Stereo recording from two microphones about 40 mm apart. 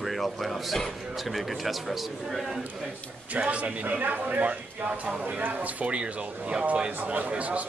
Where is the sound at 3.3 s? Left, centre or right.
Right.